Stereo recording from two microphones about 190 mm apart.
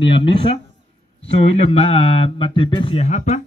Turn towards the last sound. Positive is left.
turn(degrees=40)  # may be behind; listen again after turning